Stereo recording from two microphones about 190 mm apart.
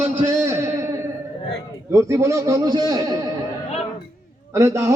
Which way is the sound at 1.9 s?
15° right (ahead or behind).